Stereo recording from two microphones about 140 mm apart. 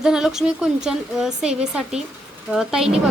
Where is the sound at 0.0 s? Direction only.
5° right (ahead or behind).